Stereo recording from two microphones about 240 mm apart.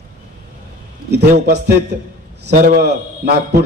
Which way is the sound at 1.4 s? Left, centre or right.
Right.